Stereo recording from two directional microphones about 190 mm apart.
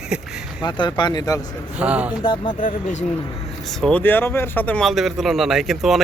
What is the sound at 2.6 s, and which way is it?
Speech, 40° left (ahead or behind).